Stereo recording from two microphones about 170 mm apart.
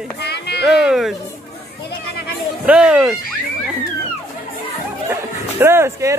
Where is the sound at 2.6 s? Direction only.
5° right (ahead or behind).